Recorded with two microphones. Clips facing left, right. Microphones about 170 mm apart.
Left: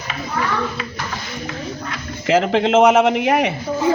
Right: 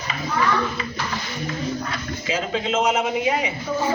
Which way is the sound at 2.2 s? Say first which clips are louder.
Left 10 dB; 75° left (ahead or behind).